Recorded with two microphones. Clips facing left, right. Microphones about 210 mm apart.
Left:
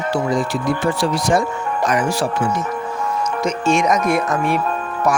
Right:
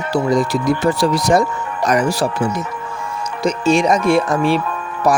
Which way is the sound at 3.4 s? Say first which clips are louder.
Right 4 dB; 35° right (ahead or behind).